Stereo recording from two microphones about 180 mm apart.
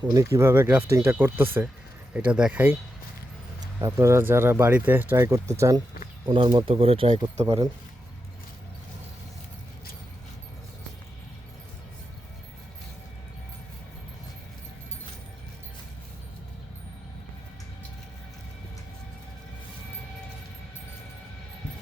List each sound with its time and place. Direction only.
0.0 s speech: 20° right (ahead or behind)
3.8 s speech: 15° right (ahead or behind)
6.2 s speech: 30° right (ahead or behind)